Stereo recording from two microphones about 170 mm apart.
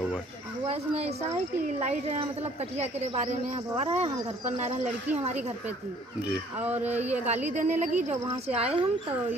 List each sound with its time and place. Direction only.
0.7 s a woman's voice: 40° right (ahead or behind)
3.7 s a woman's voice: 40° right (ahead or behind)
6.2 s speech: 10° right (ahead or behind)
7.2 s a woman's voice: 40° right (ahead or behind)